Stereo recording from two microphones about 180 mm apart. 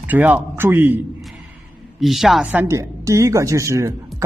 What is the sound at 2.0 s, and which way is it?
A woman's voice, centre (ahead or behind).